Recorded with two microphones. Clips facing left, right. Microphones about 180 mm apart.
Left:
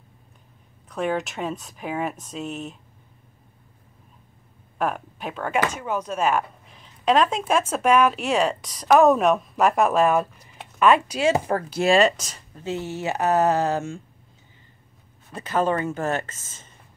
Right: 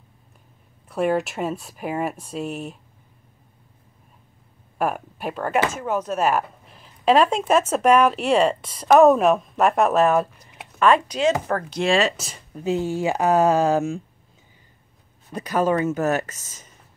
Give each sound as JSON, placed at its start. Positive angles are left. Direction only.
{"t": 0.8, "sound": "speech", "side_deg": -5}
{"t": 4.7, "sound": "a woman's voice", "side_deg": -5}
{"t": 12.6, "sound": "speech", "side_deg": -15}
{"t": 15.5, "sound": "speech", "side_deg": -10}
{"t": 16.3, "sound": "speech", "side_deg": 25}